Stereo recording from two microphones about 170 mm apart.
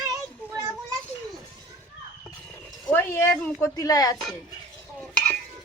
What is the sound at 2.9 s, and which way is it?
Speech, 15° left (ahead or behind).